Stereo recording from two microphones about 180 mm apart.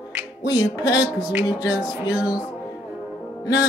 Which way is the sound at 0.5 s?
20° left (ahead or behind).